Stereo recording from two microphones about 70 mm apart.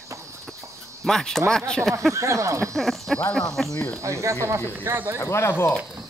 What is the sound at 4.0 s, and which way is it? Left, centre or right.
Speech, right.